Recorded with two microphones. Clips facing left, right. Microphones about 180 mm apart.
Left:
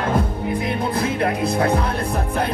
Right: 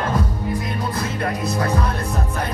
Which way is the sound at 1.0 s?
60° left (ahead or behind).